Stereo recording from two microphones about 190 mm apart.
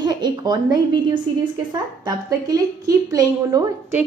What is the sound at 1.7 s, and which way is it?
A woman's voice, 20° right (ahead or behind).